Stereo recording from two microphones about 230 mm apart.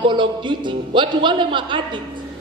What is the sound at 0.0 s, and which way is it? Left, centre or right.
A woman's voice, right.